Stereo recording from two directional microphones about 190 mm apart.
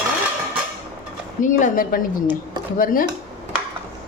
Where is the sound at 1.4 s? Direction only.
40° left (ahead or behind).